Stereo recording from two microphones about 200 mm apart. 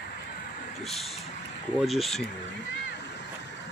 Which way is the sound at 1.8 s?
Centre (ahead or behind).